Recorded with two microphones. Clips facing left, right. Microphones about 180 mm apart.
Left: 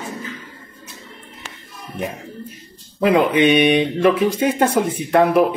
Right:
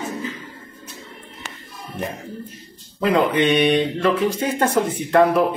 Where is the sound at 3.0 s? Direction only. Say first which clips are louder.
Left 3 dB; 15° left (ahead or behind).